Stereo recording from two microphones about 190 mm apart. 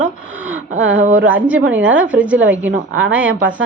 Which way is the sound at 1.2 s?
10° right (ahead or behind).